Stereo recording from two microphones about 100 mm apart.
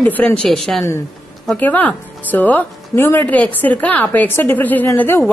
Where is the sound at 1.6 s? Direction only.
15° left (ahead or behind).